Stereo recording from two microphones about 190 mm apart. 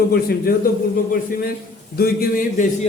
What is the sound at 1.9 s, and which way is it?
Speech, 50° left (ahead or behind).